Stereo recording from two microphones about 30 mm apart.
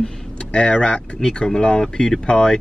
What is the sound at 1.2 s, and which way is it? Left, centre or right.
Speech, left.